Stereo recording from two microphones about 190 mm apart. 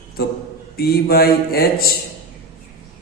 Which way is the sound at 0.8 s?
55° left (ahead or behind).